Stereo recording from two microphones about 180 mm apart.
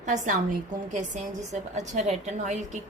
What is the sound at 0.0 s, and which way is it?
A woman's voice, 45° right (ahead or behind).